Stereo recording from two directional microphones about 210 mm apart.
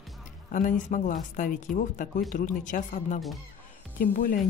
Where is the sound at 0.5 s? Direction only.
40° left (ahead or behind).